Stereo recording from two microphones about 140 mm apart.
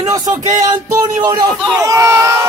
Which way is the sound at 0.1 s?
25° right (ahead or behind).